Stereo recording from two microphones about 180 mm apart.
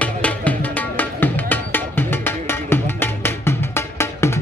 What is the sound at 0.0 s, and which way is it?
Music, 10° left (ahead or behind).